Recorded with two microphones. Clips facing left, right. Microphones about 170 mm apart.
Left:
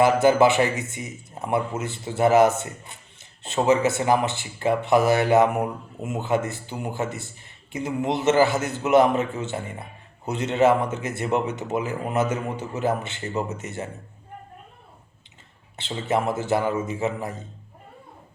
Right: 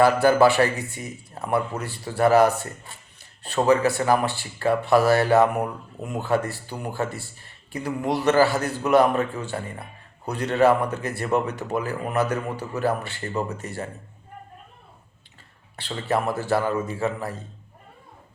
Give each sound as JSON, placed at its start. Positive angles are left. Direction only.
{"t": 0.0, "sound": "a man's voice", "side_deg": 20}
{"t": 15.7, "sound": "a man's voice", "side_deg": 20}